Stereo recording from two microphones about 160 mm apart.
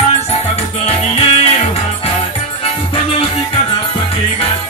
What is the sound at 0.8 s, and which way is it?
Music, 40° left (ahead or behind).